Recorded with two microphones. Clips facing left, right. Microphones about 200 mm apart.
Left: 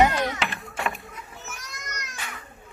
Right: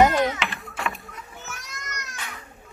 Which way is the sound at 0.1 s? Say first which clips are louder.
Right 3 dB; centre (ahead or behind).